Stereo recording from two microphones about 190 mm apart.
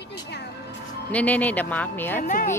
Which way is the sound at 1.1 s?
5° left (ahead or behind).